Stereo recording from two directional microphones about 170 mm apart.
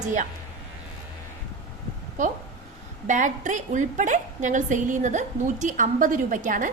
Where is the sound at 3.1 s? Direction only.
45° right (ahead or behind).